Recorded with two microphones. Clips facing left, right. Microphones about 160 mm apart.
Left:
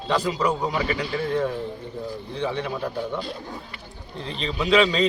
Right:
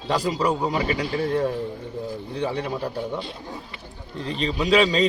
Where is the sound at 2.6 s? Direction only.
35° right (ahead or behind).